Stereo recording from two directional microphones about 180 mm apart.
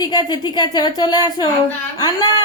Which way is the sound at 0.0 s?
25° left (ahead or behind).